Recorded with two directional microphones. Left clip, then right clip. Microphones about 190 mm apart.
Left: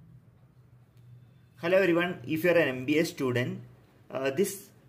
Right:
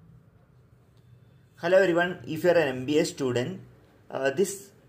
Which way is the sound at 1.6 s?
25° left (ahead or behind).